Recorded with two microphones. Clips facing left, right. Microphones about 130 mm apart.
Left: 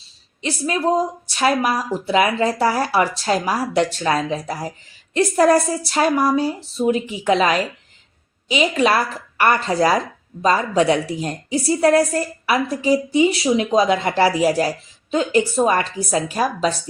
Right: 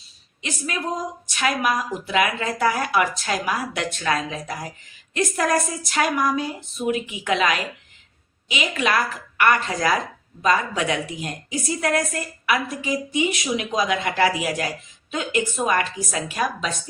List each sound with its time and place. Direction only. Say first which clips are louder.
0.4 s a woman's voice: left 8 dB; 35° left (ahead or behind)